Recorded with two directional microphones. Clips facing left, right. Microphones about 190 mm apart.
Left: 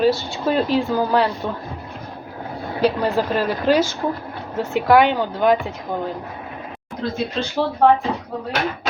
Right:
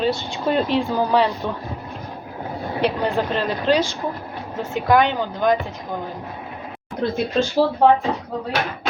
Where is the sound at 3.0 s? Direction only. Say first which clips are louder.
Left 2 dB; 10° left (ahead or behind).